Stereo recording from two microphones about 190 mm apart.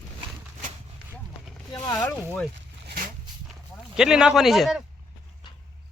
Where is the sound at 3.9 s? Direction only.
5° right (ahead or behind).